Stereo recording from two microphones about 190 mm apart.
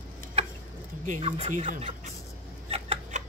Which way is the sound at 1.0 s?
35° right (ahead or behind).